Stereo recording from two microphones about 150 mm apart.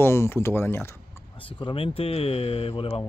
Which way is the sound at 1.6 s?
35° left (ahead or behind).